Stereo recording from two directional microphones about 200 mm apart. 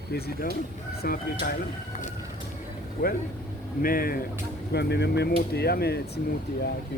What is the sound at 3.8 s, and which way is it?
Speech, 45° left (ahead or behind).